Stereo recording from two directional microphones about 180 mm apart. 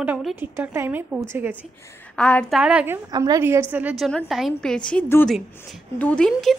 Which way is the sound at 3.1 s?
20° right (ahead or behind).